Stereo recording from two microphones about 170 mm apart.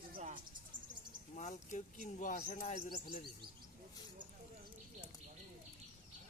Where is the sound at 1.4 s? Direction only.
45° left (ahead or behind).